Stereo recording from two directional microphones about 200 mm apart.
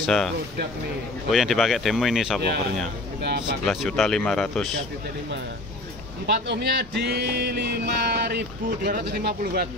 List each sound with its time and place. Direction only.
0.0 s speech: centre (ahead or behind)
1.3 s speech: centre (ahead or behind)
3.6 s speech: centre (ahead or behind)
6.2 s speech: 60° right (ahead or behind)